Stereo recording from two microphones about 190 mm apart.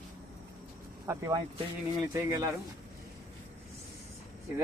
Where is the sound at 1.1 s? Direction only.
15° right (ahead or behind).